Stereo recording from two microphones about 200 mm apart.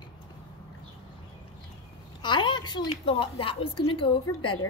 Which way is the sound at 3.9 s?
25° left (ahead or behind).